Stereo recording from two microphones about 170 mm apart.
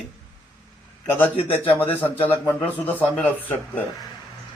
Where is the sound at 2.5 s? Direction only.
10° left (ahead or behind).